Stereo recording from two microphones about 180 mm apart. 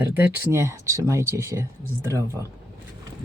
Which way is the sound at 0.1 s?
10° right (ahead or behind).